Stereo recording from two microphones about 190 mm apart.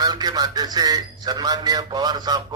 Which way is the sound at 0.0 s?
20° right (ahead or behind).